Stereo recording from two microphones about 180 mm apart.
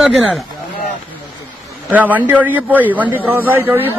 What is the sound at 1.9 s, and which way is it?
A man's voice, 10° right (ahead or behind).